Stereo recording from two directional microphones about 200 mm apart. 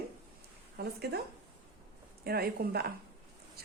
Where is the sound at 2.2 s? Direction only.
50° right (ahead or behind).